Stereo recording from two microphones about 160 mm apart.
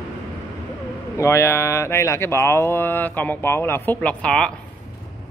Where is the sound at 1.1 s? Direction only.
15° left (ahead or behind).